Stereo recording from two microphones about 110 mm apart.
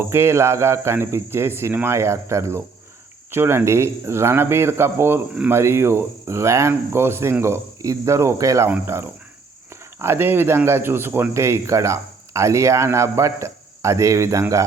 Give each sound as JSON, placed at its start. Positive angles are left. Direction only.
{"t": 0.0, "sound": "speech", "side_deg": -25}